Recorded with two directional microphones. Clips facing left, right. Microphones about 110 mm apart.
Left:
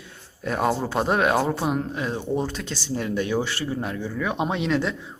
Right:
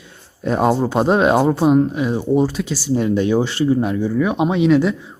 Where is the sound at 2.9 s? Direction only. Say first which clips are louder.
Right 8 dB; 20° right (ahead or behind); by 4.9 s 5° right (ahead or behind).